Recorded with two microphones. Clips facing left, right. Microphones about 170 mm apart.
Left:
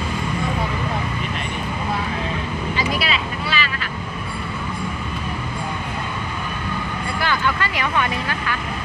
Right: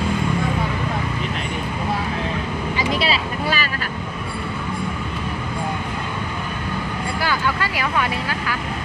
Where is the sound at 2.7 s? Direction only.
25° right (ahead or behind).